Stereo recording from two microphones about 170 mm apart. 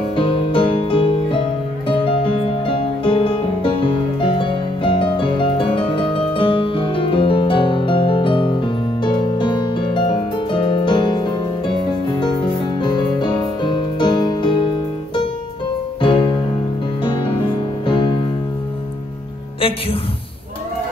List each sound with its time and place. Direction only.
0.1 s music: 30° left (ahead or behind)
16.0 s music: 30° left (ahead or behind)